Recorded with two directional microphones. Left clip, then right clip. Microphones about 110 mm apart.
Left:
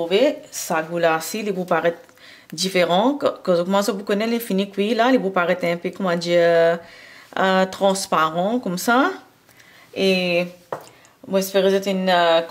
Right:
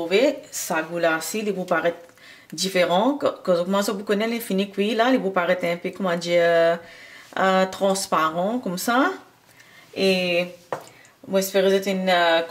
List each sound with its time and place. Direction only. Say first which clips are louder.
0.0 s speech: left 2 dB; 15° left (ahead or behind)